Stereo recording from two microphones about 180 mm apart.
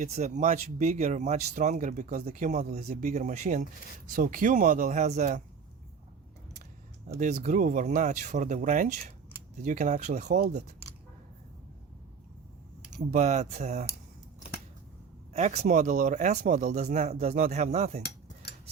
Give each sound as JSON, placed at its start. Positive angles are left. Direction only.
{"t": 0.0, "sound": "speech", "side_deg": -40}
{"t": 7.2, "sound": "speech", "side_deg": -40}
{"t": 13.1, "sound": "speech", "side_deg": -40}
{"t": 15.3, "sound": "speech", "side_deg": -40}